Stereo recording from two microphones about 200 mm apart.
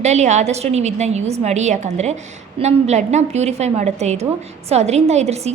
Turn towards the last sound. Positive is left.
turn(degrees=-35)  # may be behind; listen again after turning